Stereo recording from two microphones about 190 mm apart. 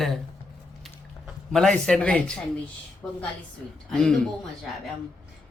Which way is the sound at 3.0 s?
10° left (ahead or behind).